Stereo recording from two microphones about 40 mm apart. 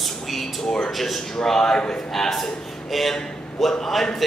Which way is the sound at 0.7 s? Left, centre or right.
Left.